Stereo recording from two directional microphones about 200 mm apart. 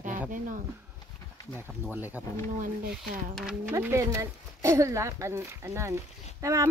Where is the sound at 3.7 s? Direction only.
15° right (ahead or behind).